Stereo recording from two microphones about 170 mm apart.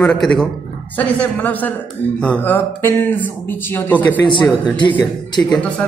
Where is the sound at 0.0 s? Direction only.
Centre (ahead or behind).